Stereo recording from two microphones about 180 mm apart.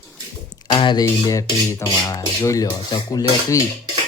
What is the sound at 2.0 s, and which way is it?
Speech, 15° left (ahead or behind).